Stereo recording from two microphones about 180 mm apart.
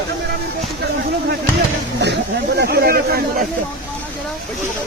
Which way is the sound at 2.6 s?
60° right (ahead or behind).